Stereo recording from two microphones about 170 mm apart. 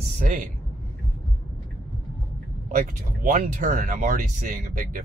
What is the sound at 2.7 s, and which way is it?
Speech, 55° right (ahead or behind).